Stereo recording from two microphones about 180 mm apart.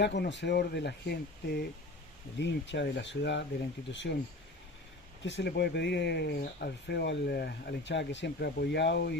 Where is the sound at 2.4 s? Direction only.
75° left (ahead or behind).